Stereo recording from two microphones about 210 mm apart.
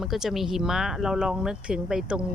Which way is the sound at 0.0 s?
Centre (ahead or behind).